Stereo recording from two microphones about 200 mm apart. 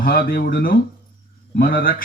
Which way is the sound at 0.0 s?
50° left (ahead or behind).